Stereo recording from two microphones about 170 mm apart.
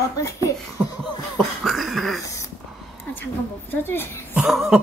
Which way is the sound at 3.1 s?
10° left (ahead or behind).